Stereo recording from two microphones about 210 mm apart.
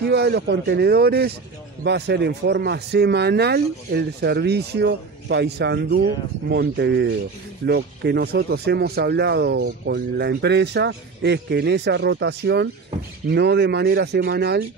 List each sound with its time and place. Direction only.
0.0 s speech: 50° right (ahead or behind)